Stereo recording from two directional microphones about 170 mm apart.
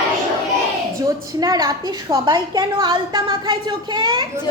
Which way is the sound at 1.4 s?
20° right (ahead or behind).